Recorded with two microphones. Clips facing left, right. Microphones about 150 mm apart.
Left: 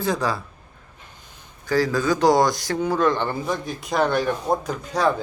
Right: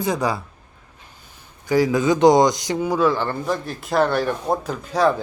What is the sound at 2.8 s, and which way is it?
Speech, 5° right (ahead or behind).